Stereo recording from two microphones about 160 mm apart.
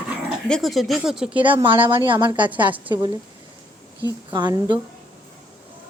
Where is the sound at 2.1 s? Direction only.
30° right (ahead or behind).